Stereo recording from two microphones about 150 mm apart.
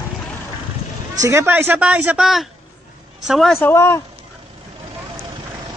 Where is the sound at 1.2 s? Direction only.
15° right (ahead or behind); by 3.6 s centre (ahead or behind).